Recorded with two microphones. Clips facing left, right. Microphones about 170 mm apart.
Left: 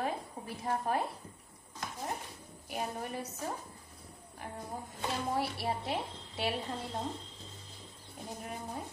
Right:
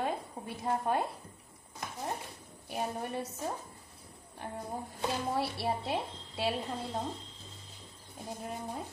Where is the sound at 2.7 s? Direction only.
25° right (ahead or behind).